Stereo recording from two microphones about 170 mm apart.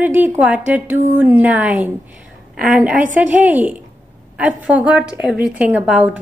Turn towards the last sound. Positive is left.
turn(degrees=-10)  # may be behind; listen again after turning